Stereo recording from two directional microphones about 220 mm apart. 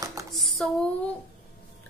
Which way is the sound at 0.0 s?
15° right (ahead or behind).